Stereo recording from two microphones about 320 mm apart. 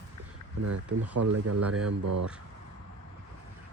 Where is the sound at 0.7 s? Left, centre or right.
Right.